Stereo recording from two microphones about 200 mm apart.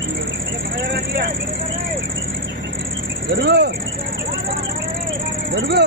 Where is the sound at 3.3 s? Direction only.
55° right (ahead or behind).